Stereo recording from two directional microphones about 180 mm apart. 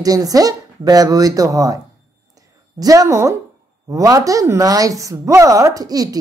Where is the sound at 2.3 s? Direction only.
20° right (ahead or behind).